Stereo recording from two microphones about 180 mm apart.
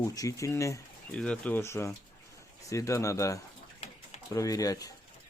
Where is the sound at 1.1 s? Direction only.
5° left (ahead or behind).